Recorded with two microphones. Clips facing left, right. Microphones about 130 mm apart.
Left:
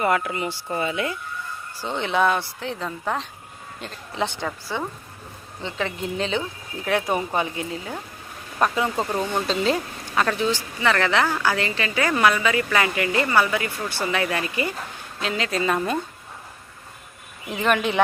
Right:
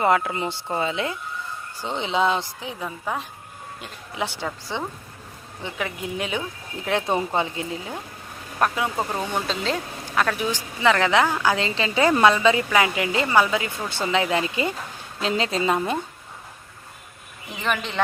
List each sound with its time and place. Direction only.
0.0 s a woman's voice: 25° right (ahead or behind)
8.5 s speech: 5° right (ahead or behind)
9.5 s speech: centre (ahead or behind)
10.3 s a woman's voice: 15° right (ahead or behind)
17.5 s speech: centre (ahead or behind)